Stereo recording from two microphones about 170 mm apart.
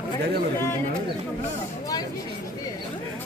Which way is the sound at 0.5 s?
15° left (ahead or behind).